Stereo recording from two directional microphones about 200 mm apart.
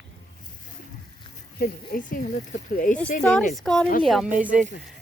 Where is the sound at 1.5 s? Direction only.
45° left (ahead or behind).